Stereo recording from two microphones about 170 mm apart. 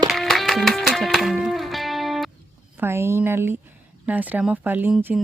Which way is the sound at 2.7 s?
15° right (ahead or behind).